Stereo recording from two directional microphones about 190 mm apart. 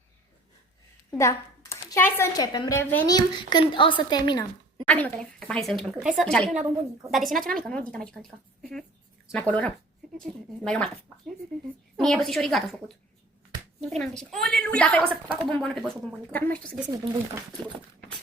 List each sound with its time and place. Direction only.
1.1 s a woman's voice: 15° left (ahead or behind)
4.9 s speech: 5° left (ahead or behind)
6.6 s a woman's voice: 15° right (ahead or behind)
7.1 s speech: centre (ahead or behind)
9.3 s speech: 5° left (ahead or behind)
11.9 s speech: centre (ahead or behind)
13.9 s speech: 5° left (ahead or behind)